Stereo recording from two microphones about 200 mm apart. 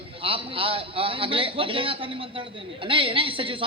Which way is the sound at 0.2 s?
25° right (ahead or behind).